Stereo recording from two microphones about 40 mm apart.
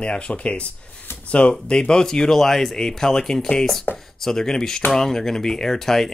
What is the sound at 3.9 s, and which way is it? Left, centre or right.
Speech, left.